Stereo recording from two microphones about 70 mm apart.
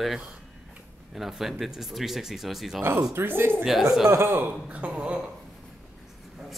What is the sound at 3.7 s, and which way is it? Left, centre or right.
Speech, centre.